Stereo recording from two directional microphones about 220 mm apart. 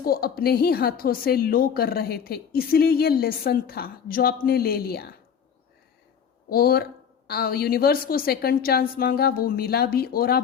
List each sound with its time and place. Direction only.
0.0 s a woman's voice: 45° left (ahead or behind)
6.5 s a woman's voice: 45° left (ahead or behind)